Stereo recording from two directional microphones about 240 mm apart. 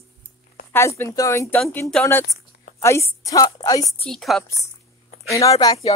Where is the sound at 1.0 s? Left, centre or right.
Centre.